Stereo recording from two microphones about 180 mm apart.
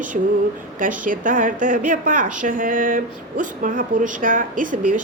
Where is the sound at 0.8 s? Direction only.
50° right (ahead or behind).